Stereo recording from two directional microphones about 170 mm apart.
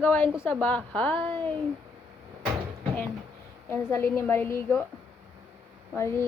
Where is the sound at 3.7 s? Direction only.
10° left (ahead or behind).